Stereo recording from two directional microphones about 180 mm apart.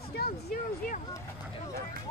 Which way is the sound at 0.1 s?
60° left (ahead or behind).